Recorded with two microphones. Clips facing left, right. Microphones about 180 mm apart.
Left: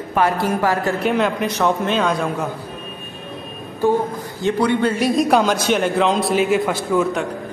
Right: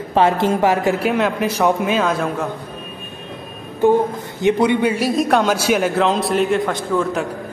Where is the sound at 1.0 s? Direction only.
Centre (ahead or behind).